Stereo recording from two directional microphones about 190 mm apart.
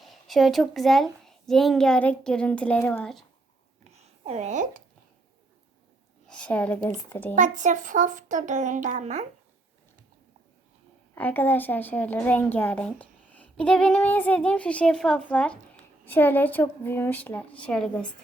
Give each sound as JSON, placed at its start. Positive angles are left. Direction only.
{"t": 0.0, "sound": "a woman's voice", "side_deg": 0}
{"t": 3.9, "sound": "a sound", "side_deg": -35}
{"t": 6.2, "sound": "a woman's voice", "side_deg": 5}
{"t": 7.3, "sound": "a child's voice", "side_deg": -40}
{"t": 11.1, "sound": "a woman's voice", "side_deg": 10}